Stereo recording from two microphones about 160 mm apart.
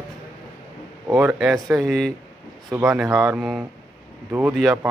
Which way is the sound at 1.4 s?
Centre (ahead or behind).